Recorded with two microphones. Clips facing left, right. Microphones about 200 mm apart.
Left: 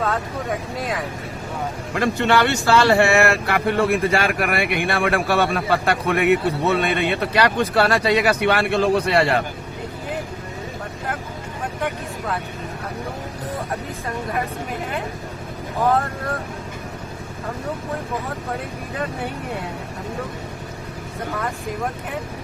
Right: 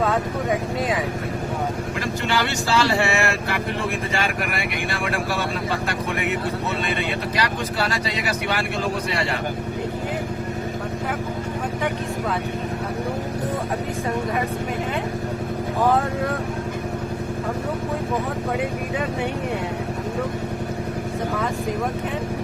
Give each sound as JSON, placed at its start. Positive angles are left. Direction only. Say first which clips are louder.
{"t": 2.0, "sound": "speech", "louder": "left 8 dB", "side_deg": 60}